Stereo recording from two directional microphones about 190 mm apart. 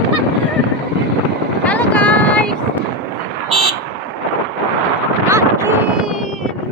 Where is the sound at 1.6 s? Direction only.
10° left (ahead or behind).